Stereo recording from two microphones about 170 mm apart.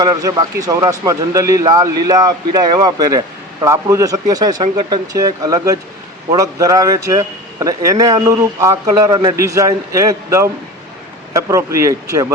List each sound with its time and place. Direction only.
0.0 s a man's voice: 20° right (ahead or behind)